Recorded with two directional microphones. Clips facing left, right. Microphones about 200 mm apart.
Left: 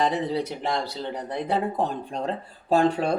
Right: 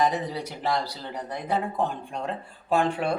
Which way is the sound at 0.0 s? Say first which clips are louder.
Left 2 dB; 30° left (ahead or behind).